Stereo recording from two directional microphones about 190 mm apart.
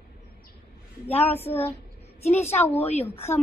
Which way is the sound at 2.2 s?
35° left (ahead or behind).